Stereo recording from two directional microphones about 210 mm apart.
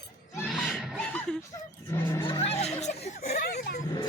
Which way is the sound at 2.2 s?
25° left (ahead or behind).